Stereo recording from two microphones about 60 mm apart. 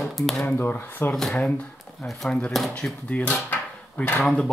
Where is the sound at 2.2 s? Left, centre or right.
Centre.